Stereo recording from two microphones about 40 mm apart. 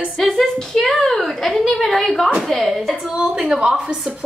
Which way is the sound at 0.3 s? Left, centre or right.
Centre.